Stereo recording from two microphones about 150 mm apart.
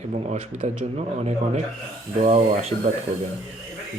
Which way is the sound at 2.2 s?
45° right (ahead or behind).